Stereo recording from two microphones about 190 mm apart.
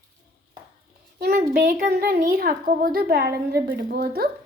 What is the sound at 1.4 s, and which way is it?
A woman's voice, 50° right (ahead or behind).